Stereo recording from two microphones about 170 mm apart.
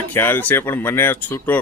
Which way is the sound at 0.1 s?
10° left (ahead or behind).